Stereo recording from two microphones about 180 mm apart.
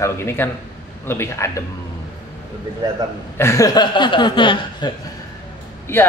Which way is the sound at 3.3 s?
15° left (ahead or behind).